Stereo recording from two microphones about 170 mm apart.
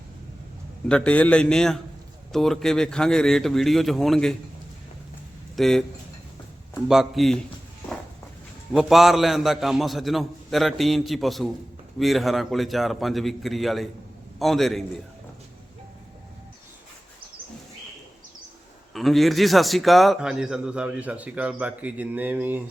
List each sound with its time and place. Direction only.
0.9 s a man's voice: 5° left (ahead or behind)
5.5 s a man's voice: centre (ahead or behind)
6.8 s a man's voice: centre (ahead or behind)
8.7 s a man's voice: centre (ahead or behind)
18.9 s a man's voice: centre (ahead or behind)